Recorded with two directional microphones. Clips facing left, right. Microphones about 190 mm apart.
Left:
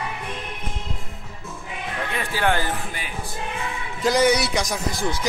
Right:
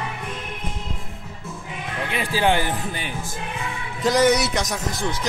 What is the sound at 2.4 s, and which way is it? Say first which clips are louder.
Speech: right 2 dB; 15° right (ahead or behind).